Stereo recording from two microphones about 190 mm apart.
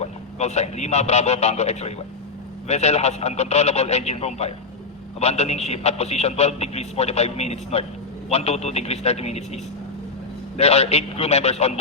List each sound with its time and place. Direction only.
0.0 s a man's voice: 35° left (ahead or behind)
10.6 s a man's voice: 35° left (ahead or behind)